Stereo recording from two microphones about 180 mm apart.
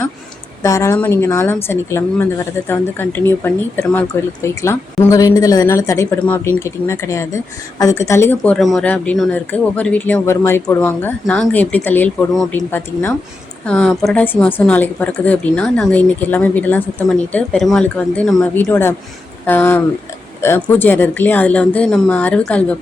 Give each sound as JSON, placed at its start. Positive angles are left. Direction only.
{"t": 0.6, "sound": "a woman's voice", "side_deg": 15}